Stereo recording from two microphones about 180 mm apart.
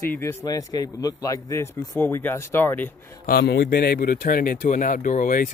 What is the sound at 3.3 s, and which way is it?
Speech, 60° left (ahead or behind).